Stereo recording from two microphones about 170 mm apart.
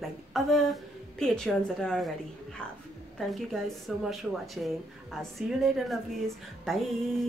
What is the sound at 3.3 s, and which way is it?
Speech, centre (ahead or behind).